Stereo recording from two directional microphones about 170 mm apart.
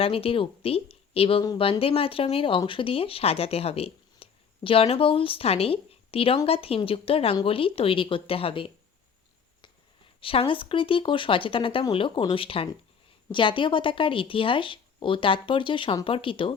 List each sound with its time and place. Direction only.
0.0 s speech: 35° left (ahead or behind)
10.2 s speech: 30° left (ahead or behind)